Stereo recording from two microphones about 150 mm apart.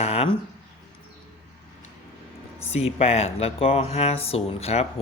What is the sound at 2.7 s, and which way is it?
Speech, 45° left (ahead or behind).